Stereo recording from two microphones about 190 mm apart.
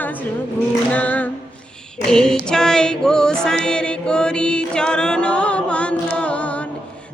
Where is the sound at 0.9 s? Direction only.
10° left (ahead or behind).